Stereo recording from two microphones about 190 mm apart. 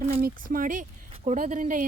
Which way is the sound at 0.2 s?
50° right (ahead or behind).